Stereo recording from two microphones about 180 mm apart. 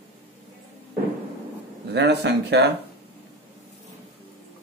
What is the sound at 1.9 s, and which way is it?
Speech, 70° right (ahead or behind).